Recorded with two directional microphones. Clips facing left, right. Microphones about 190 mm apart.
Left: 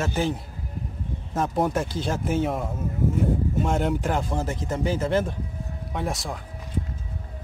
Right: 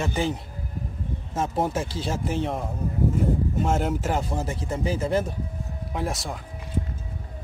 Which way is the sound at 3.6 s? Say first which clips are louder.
Even; centre (ahead or behind).